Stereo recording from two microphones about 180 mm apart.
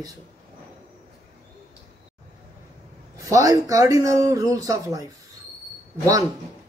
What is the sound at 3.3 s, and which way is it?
A man's voice, 20° right (ahead or behind).